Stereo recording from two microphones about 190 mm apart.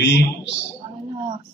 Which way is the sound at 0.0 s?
65° left (ahead or behind).